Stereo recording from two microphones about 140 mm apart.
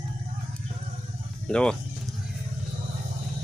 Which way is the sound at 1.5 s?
5° left (ahead or behind).